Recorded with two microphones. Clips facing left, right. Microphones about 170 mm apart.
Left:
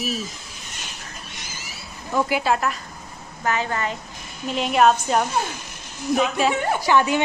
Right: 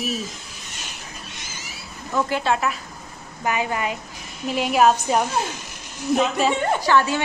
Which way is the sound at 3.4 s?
15° right (ahead or behind).